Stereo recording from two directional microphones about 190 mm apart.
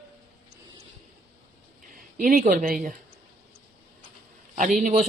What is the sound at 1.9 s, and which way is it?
Speech, 45° right (ahead or behind).